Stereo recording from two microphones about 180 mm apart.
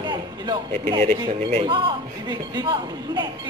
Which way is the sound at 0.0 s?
25° right (ahead or behind).